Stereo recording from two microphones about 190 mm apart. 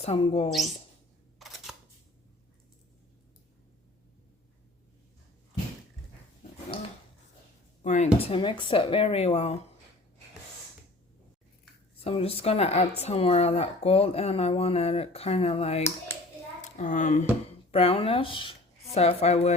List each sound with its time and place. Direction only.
0.0 s speech: 35° left (ahead or behind)
1.4 s camera: centre (ahead or behind)
7.8 s speech: 40° left (ahead or behind)
12.0 s a woman's voice: 30° left (ahead or behind)